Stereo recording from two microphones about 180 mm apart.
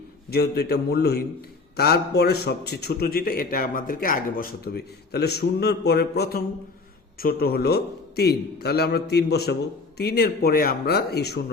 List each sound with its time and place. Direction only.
0.3 s a man's voice: 60° left (ahead or behind)